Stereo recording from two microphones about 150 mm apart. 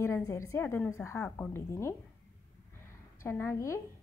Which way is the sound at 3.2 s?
15° left (ahead or behind).